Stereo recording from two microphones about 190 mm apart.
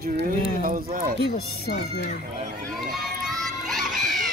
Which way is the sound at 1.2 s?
60° left (ahead or behind).